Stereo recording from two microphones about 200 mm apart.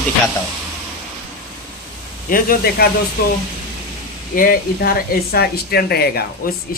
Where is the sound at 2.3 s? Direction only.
45° left (ahead or behind).